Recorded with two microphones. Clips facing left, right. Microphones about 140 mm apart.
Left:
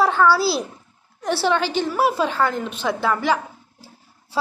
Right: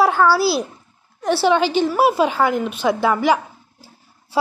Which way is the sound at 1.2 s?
10° right (ahead or behind).